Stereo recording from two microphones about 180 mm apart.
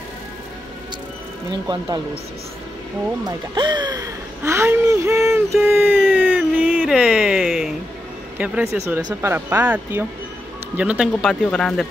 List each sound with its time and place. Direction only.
1.5 s speech: 25° right (ahead or behind)
3.3 s speech: 25° right (ahead or behind)
5.3 s a sound: 15° right (ahead or behind)
8.4 s speech: 10° right (ahead or behind)